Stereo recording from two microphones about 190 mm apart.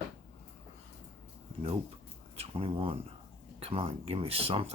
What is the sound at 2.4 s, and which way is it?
Speech, 30° right (ahead or behind).